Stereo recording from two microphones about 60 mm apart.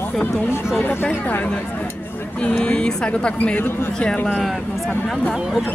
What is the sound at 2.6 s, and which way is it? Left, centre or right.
Speech, centre.